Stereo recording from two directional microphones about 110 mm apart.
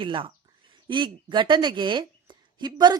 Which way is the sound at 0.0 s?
50° right (ahead or behind).